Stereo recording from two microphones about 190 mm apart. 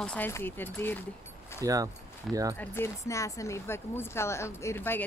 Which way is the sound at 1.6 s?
15° right (ahead or behind).